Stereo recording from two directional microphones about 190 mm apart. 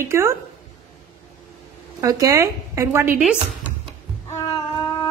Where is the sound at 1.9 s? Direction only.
20° right (ahead or behind).